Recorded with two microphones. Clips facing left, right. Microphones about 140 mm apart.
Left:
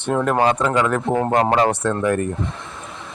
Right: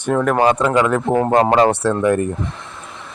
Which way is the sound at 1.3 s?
30° right (ahead or behind).